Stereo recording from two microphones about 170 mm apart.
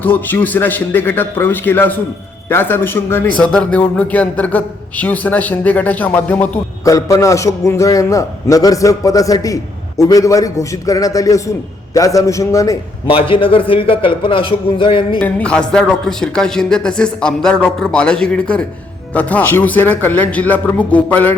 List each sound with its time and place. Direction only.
0.0 s a man's voice: 10° left (ahead or behind)
13.1 s a man's voice: 30° left (ahead or behind)
15.2 s a man's voice: 5° left (ahead or behind)